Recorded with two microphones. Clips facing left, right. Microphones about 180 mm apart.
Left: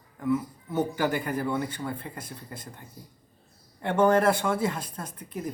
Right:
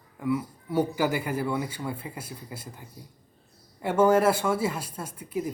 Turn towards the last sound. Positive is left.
turn(degrees=-5)  # may be behind; listen again after turning